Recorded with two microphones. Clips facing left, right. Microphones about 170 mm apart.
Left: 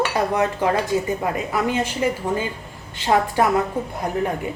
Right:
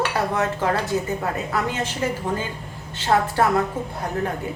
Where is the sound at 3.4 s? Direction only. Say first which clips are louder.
Left 1 dB; 15° left (ahead or behind).